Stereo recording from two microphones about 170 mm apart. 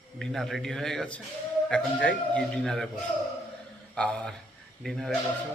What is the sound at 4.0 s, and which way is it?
Speech, 5° left (ahead or behind).